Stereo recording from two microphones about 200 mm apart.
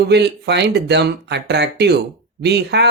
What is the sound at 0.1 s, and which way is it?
Speech, 55° right (ahead or behind).